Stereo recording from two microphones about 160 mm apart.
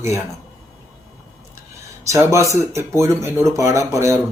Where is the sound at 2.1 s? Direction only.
20° right (ahead or behind).